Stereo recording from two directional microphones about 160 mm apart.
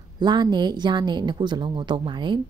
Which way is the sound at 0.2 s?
30° right (ahead or behind).